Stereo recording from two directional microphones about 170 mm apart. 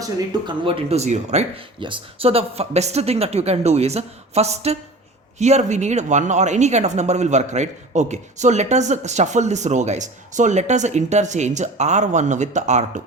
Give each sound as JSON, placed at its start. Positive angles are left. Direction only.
{"t": 0.0, "sound": "speech", "side_deg": -30}